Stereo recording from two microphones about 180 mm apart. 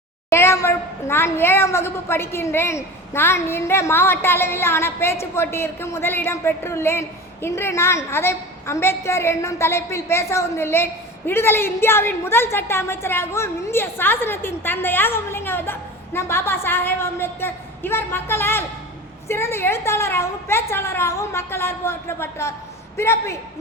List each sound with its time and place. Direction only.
0.3 s a woman's voice: 15° left (ahead or behind)